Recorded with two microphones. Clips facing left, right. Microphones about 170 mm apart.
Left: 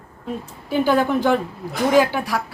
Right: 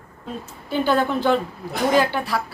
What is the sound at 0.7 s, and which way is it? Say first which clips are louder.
A woman's voice: left 2 dB; 10° left (ahead or behind).